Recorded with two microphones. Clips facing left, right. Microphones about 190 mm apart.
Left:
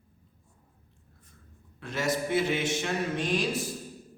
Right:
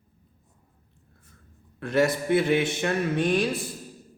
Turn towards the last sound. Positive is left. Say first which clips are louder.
# right 5 dB
turn(degrees=-60)  # may be behind; listen again after turning